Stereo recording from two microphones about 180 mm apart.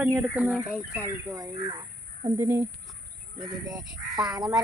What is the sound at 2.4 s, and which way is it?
Speech, 15° right (ahead or behind).